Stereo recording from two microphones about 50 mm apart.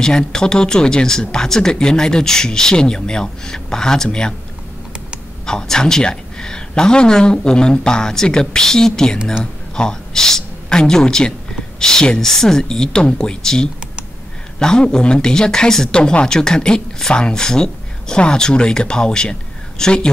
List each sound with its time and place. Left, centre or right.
0.0 s speech: centre
5.4 s speech: centre